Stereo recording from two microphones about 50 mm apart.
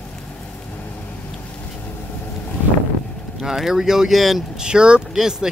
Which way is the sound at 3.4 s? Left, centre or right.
Centre.